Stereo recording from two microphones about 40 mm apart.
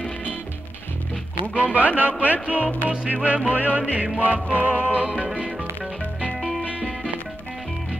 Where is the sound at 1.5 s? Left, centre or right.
Right.